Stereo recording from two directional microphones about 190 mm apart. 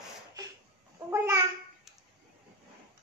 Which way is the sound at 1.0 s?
15° right (ahead or behind).